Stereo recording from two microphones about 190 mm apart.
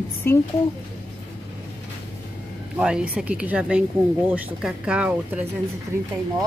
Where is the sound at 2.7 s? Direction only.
5° right (ahead or behind).